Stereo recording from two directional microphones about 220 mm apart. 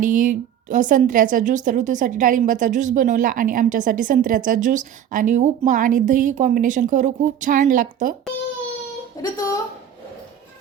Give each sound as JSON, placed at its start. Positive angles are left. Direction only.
{"t": 0.1, "sound": "a woman's voice", "side_deg": -35}
{"t": 9.2, "sound": "speech", "side_deg": 15}